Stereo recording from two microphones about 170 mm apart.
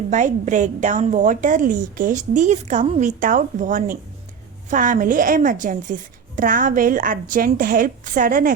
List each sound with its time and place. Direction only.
0.1 s a woman's voice: 45° right (ahead or behind)